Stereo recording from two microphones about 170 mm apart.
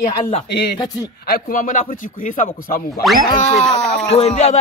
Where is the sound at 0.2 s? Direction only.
40° left (ahead or behind).